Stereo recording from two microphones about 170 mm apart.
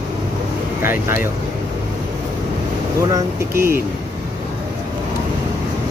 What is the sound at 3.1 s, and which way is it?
Speech, 15° right (ahead or behind).